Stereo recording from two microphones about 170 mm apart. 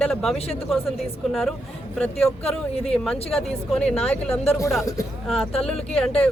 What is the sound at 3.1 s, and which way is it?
Speech, 35° left (ahead or behind).